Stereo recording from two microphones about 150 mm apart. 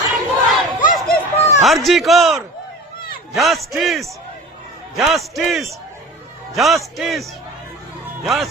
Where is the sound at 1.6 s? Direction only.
Centre (ahead or behind).